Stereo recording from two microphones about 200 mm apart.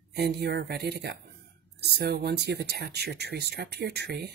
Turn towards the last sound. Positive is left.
turn(degrees=-55)  # may be behind; listen again after turning